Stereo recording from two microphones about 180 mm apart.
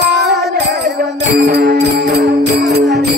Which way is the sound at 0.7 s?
60° right (ahead or behind).